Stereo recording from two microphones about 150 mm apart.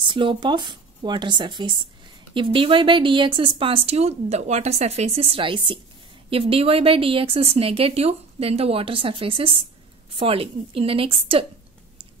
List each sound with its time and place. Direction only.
0.1 s a woman's voice: 35° right (ahead or behind)